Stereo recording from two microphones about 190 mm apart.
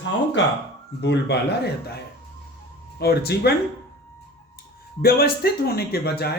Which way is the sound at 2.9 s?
55° left (ahead or behind).